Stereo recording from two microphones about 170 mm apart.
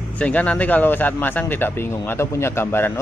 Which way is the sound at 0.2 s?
10° left (ahead or behind).